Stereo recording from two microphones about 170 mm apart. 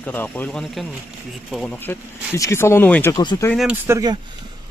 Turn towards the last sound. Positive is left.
turn(degrees=-20)  # may be behind; listen again after turning